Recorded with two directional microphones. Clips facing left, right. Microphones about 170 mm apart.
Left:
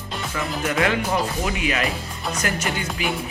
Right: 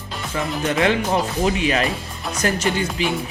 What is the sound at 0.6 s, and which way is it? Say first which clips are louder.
Speech: right 3 dB; 25° right (ahead or behind).